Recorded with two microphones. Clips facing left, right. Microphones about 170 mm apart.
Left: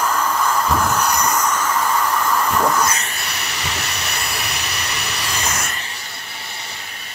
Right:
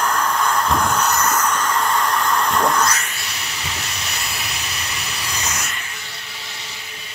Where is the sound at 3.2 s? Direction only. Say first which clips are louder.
Left 3 dB; 65° left (ahead or behind).